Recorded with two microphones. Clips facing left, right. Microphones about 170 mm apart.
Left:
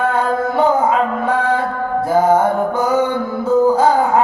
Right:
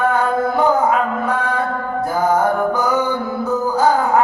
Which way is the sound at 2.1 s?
25° left (ahead or behind).